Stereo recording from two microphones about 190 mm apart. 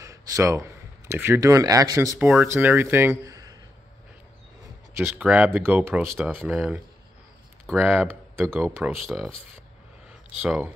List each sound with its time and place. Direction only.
0.0 s speech: 15° right (ahead or behind)
2.1 s speech: centre (ahead or behind)
2.4 s speech: 10° right (ahead or behind)
5.0 s speech: 5° right (ahead or behind)
10.4 s speech: 10° right (ahead or behind)